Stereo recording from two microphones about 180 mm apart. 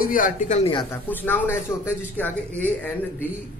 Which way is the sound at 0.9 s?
10° left (ahead or behind).